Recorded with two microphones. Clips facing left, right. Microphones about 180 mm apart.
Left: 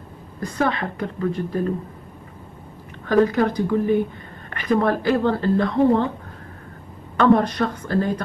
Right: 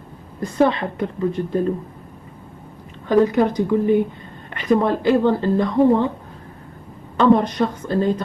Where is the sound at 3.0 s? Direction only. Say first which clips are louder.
Right 2 dB; 20° right (ahead or behind).